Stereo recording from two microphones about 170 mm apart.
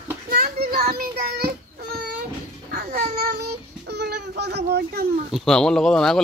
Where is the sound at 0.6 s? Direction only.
60° right (ahead or behind).